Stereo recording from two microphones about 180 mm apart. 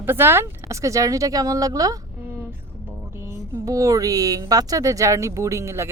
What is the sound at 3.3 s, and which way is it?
Speech, 20° right (ahead or behind).